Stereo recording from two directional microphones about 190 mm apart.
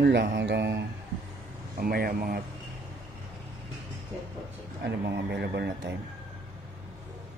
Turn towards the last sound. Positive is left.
turn(degrees=-60)  # may be behind; listen again after turning